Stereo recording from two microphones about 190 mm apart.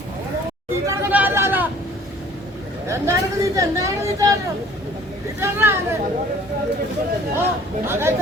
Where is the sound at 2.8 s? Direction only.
15° right (ahead or behind).